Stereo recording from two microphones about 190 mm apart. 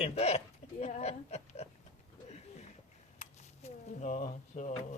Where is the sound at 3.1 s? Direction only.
35° left (ahead or behind).